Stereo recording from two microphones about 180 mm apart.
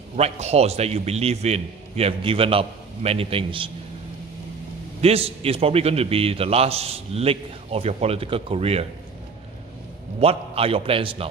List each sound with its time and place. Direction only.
0.1 s a man's voice: 35° right (ahead or behind)
5.0 s a man's voice: 35° right (ahead or behind)
10.2 s a man's voice: 30° right (ahead or behind)